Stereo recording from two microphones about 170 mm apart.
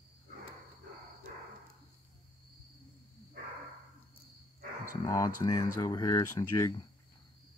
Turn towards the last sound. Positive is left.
turn(degrees=20)  # may be behind; listen again after turning